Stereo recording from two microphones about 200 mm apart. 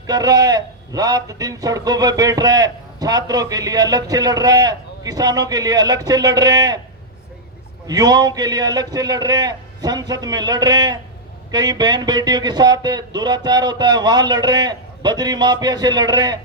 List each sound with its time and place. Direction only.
0.1 s a man's voice: 20° right (ahead or behind)
7.9 s a man's voice: 20° right (ahead or behind)